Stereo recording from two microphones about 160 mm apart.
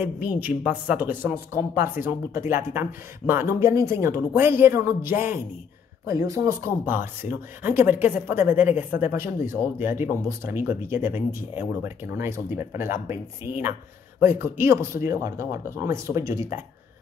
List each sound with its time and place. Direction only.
0.0 s speech: 10° right (ahead or behind)
8.6 s speech: 50° left (ahead or behind)
9.8 s speech: 15° right (ahead or behind)